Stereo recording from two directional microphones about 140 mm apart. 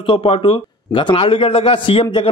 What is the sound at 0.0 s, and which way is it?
A man's voice, 40° left (ahead or behind).